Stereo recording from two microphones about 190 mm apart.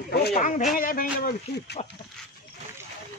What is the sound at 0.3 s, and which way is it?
Speech, 40° left (ahead or behind).